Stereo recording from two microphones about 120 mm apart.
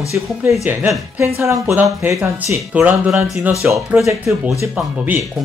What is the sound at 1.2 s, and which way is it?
Speech, 25° right (ahead or behind).